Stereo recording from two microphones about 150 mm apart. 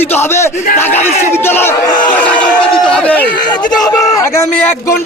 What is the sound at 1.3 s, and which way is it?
Speech, 15° left (ahead or behind).